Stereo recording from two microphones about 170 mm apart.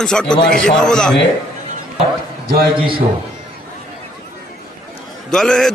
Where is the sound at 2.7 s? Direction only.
30° right (ahead or behind).